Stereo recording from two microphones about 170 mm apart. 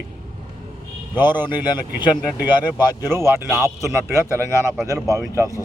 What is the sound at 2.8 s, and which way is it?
Speech, 20° left (ahead or behind).